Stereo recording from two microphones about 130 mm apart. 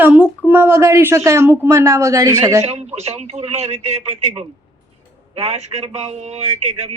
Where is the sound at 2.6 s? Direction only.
55° right (ahead or behind).